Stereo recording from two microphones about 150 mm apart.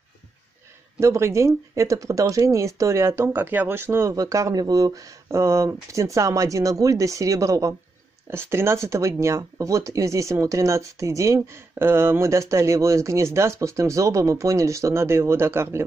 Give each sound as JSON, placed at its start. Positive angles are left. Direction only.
{"t": 0.9, "sound": "speech", "side_deg": -20}